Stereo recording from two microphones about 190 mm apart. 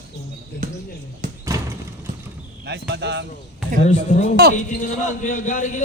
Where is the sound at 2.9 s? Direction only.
65° right (ahead or behind).